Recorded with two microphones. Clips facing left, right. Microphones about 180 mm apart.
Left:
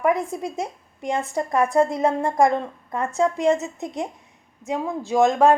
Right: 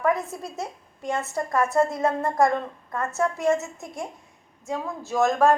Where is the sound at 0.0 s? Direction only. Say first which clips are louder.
Left 3 dB; 15° left (ahead or behind).